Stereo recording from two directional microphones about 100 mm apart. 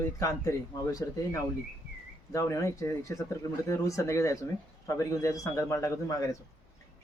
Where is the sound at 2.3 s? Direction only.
30° left (ahead or behind).